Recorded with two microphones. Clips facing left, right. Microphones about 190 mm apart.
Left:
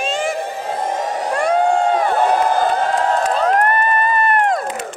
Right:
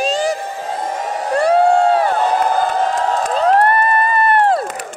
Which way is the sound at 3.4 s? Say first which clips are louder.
Right 3 dB; 30° right (ahead or behind).